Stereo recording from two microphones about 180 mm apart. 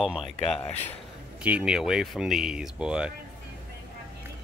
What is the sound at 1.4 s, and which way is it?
Speech, 5° right (ahead or behind).